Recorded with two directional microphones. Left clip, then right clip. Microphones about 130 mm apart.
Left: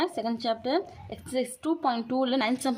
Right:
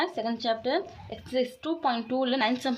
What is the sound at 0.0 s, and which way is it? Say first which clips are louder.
A woman's voice: even; 35° left (ahead or behind).